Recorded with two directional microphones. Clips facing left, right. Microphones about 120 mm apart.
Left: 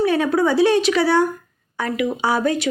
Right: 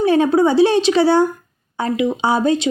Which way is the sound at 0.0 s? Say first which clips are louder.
Right 4 dB; 30° right (ahead or behind).